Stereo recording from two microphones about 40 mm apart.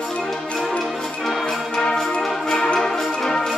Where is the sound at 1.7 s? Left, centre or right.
Centre.